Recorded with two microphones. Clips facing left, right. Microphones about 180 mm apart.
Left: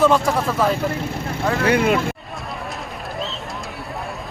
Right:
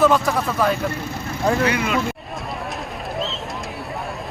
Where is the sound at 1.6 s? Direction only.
55° left (ahead or behind).